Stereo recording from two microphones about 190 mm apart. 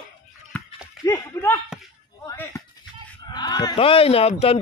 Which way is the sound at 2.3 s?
15° left (ahead or behind).